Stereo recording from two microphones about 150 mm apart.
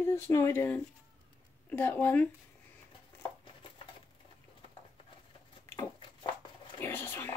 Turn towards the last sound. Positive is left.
turn(degrees=15)  # may be behind; listen again after turning